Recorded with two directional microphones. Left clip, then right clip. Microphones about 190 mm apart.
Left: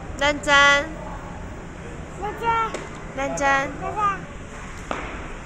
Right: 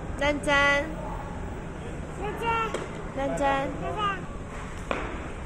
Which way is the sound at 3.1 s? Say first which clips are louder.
Left 5 dB; 5° right (ahead or behind).